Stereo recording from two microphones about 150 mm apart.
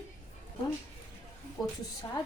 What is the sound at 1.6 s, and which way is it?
Speech, 25° left (ahead or behind).